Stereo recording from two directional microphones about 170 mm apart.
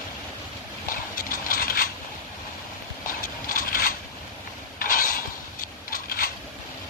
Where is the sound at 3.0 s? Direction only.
55° left (ahead or behind).